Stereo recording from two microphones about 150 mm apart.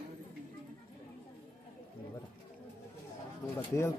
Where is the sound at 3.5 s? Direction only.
15° left (ahead or behind).